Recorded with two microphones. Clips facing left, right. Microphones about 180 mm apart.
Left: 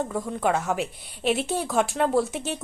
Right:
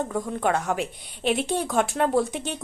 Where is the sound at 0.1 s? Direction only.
Centre (ahead or behind).